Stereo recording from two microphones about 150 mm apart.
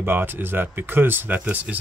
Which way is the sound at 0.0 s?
15° right (ahead or behind).